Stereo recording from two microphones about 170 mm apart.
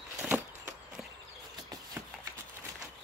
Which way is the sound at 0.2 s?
10° right (ahead or behind).